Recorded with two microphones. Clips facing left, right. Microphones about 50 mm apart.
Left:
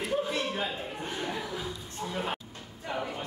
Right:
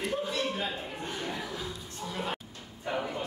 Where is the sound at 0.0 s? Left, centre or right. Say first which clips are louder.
Left 1 dB; centre.